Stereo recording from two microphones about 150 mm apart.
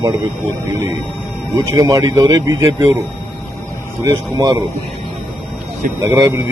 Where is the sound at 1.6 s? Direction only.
20° right (ahead or behind).